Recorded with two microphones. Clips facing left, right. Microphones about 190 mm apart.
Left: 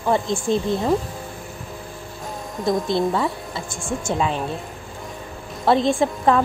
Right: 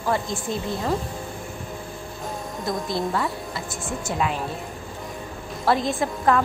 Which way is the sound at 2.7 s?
Centre (ahead or behind).